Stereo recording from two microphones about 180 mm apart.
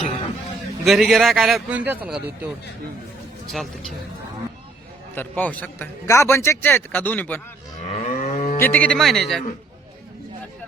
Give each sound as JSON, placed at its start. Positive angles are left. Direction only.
{"t": 0.9, "sound": "a man's voice", "side_deg": 0}
{"t": 3.5, "sound": "a man's voice", "side_deg": 0}
{"t": 5.1, "sound": "a man's voice", "side_deg": 10}
{"t": 7.9, "sound": "moo", "side_deg": 40}
{"t": 8.5, "sound": "a man's voice", "side_deg": 10}